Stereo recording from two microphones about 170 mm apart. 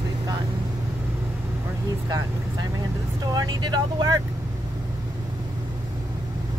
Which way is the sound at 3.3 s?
25° right (ahead or behind).